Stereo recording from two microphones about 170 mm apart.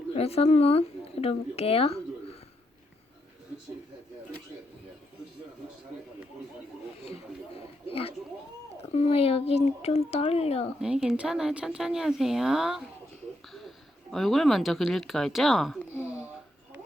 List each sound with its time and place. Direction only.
0.1 s speech: 35° left (ahead or behind)
7.9 s speech: 35° left (ahead or behind)
10.8 s speech: 5° right (ahead or behind)